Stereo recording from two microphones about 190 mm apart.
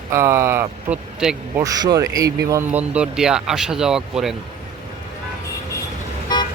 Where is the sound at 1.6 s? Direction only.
20° right (ahead or behind); by 4.4 s centre (ahead or behind).